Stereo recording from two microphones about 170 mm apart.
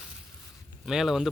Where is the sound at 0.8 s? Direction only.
Centre (ahead or behind).